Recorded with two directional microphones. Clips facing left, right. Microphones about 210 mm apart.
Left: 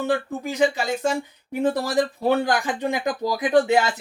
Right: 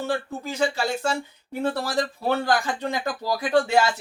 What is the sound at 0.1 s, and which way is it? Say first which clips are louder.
Speech: left 4 dB; 15° left (ahead or behind).